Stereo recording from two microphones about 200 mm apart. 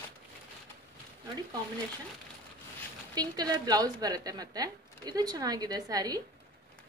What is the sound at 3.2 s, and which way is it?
A woman's voice, 20° right (ahead or behind).